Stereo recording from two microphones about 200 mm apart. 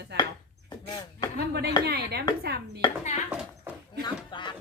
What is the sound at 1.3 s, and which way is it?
Speech, 55° right (ahead or behind).